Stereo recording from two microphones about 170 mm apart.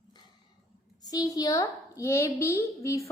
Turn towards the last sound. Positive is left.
turn(degrees=15)  # may be behind; listen again after turning